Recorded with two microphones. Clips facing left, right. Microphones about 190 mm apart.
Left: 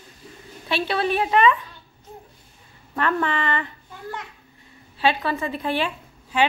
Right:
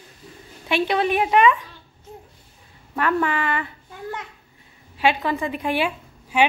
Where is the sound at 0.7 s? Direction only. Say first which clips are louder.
Right 2 dB; 15° right (ahead or behind).